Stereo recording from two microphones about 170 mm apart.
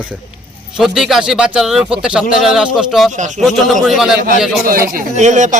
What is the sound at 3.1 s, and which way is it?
Speech, 45° right (ahead or behind).